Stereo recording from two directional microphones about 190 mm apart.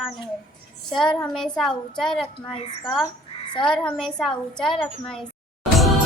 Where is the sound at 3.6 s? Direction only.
5° left (ahead or behind).